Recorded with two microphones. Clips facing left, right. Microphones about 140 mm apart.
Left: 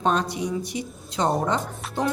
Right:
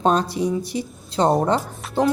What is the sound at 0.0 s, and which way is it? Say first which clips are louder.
A woman's voice: right 4 dB; 35° right (ahead or behind).